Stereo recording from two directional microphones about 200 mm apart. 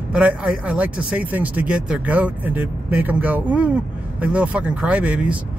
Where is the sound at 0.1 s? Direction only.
5° right (ahead or behind).